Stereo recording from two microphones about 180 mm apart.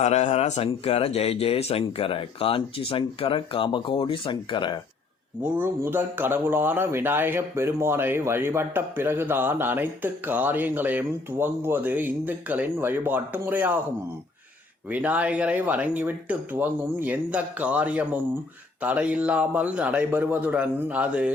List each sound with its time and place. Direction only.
0.0 s speech: 35° left (ahead or behind)
5.5 s speech: 10° right (ahead or behind)
14.8 s speech: 10° right (ahead or behind)